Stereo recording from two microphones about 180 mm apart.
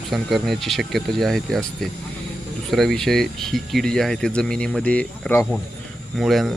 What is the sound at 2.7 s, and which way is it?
Speech, centre (ahead or behind).